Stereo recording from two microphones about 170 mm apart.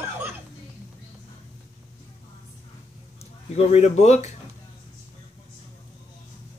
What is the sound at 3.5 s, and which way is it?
Speech, 40° left (ahead or behind).